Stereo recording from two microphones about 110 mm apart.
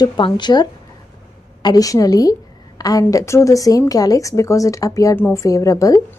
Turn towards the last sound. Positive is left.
turn(degrees=30)  # may be behind; listen again after turning